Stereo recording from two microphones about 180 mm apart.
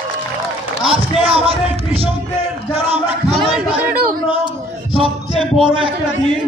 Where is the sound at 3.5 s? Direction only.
5° right (ahead or behind).